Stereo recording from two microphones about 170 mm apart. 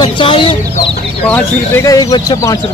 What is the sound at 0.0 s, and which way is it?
Chicken, 30° left (ahead or behind).